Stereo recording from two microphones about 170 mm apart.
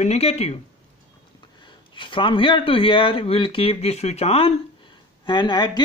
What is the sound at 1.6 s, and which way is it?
A man's voice, 30° left (ahead or behind).